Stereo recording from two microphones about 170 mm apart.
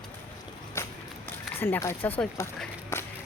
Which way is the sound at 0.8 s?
15° left (ahead or behind).